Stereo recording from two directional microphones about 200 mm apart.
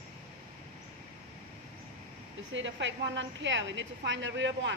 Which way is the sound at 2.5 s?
65° right (ahead or behind).